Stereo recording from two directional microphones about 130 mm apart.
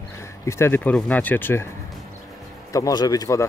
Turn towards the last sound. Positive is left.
turn(degrees=25)  # may be behind; listen again after turning